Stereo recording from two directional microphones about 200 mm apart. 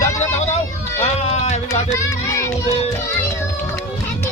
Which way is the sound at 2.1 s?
15° left (ahead or behind).